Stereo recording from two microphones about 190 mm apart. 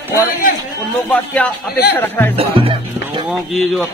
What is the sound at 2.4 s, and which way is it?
Music, 30° right (ahead or behind).